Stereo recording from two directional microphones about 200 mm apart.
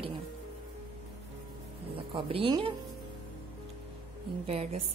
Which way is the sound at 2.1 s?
25° right (ahead or behind).